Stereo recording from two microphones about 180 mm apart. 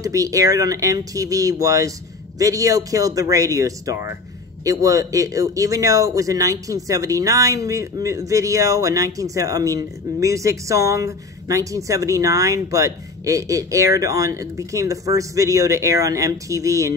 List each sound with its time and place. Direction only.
0.0 s speech: 20° right (ahead or behind)